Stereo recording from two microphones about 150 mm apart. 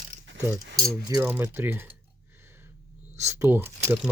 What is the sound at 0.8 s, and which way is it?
Speech, 20° right (ahead or behind).